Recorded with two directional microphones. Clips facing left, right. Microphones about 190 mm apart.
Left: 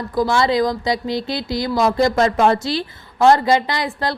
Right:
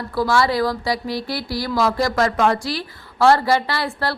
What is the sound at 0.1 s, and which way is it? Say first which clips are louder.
Speech: left 2 dB; 20° left (ahead or behind).